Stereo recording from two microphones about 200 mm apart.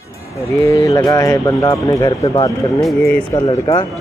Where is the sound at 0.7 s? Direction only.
15° left (ahead or behind).